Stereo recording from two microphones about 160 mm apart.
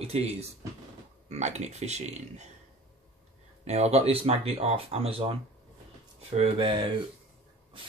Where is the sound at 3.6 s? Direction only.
40° right (ahead or behind).